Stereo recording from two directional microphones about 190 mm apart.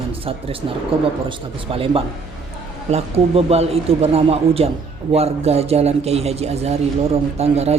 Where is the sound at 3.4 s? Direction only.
30° right (ahead or behind).